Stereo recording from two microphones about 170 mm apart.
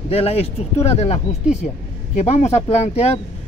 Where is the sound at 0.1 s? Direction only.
35° left (ahead or behind).